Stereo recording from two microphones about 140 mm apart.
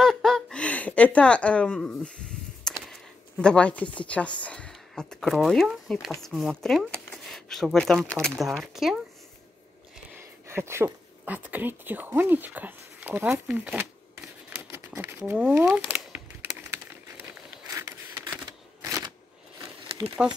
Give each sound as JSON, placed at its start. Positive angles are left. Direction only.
{"t": 0.0, "sound": "chuckle", "side_deg": 5}
{"t": 2.6, "sound": "speech", "side_deg": 5}
{"t": 10.5, "sound": "a woman's voice", "side_deg": -20}
{"t": 15.9, "sound": "typing", "side_deg": -10}
{"t": 17.7, "sound": "a sound", "side_deg": -25}
{"t": 18.8, "sound": "shuffling cards", "side_deg": -25}
{"t": 20.2, "sound": "speech", "side_deg": -5}